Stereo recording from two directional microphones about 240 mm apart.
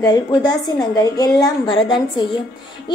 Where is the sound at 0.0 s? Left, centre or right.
Centre.